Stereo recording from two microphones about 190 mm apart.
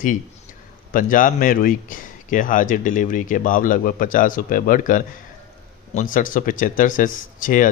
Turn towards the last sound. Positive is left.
turn(degrees=45)  # may be behind; listen again after turning